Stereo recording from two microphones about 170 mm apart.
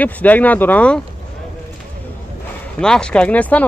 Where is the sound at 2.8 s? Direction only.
5° left (ahead or behind).